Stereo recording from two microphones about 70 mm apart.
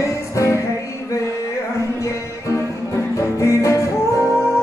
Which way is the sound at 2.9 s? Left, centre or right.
Left.